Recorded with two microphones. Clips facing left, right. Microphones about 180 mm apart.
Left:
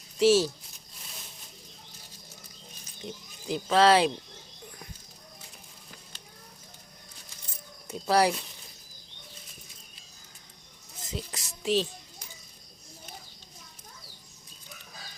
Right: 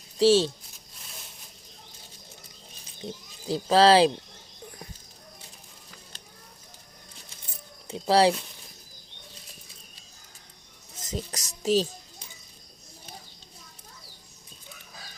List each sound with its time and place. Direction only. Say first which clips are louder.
0.2 s speech: right 2 dB; 30° right (ahead or behind)
3.5 s music: right 3 dB; 30° right (ahead or behind)
7.9 s speech: right 3 dB; 30° right (ahead or behind)
11.1 s music: right 4 dB; 40° right (ahead or behind)